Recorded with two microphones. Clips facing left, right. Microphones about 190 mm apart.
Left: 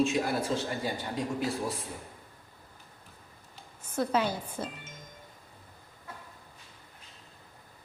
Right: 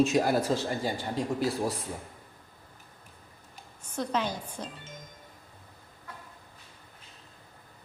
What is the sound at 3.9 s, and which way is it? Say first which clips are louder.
Speech: left 2 dB; 5° left (ahead or behind).